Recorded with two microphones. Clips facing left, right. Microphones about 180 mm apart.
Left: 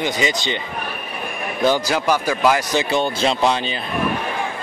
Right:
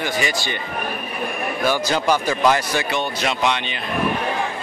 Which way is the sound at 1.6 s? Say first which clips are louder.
Left 2 dB; 15° left (ahead or behind).